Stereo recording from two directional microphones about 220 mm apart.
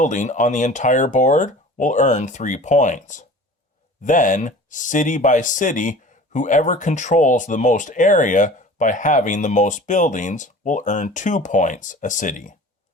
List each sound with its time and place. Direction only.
0.0 s speech: 35° left (ahead or behind)